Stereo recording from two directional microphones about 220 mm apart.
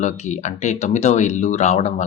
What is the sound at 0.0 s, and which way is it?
Speech, 30° left (ahead or behind).